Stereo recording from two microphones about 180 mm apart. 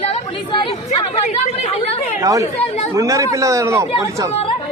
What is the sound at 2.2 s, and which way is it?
Speech, 20° right (ahead or behind).